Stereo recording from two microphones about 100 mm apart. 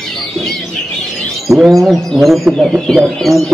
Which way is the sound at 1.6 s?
Centre (ahead or behind).